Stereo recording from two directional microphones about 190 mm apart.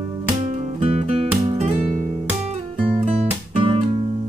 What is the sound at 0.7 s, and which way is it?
Music, 35° right (ahead or behind).